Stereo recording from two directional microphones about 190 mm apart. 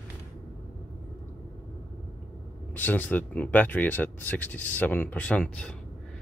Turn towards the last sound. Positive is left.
turn(degrees=5)  # may be behind; listen again after turning